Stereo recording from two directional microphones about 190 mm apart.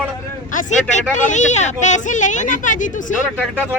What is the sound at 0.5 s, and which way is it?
Speech, 40° left (ahead or behind).